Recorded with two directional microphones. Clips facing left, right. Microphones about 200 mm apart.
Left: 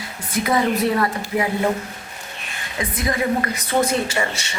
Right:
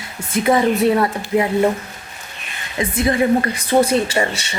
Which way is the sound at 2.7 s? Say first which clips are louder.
Right 6 dB; 25° right (ahead or behind).